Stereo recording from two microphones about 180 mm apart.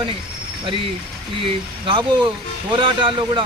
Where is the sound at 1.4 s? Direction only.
25° right (ahead or behind).